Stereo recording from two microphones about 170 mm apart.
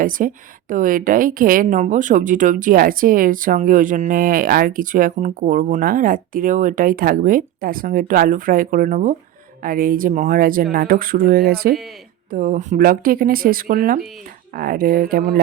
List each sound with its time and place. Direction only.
0.0 s a woman's voice: 50° right (ahead or behind)
12.3 s speech: 50° right (ahead or behind)